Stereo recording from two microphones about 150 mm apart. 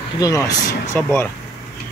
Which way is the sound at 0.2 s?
25° left (ahead or behind).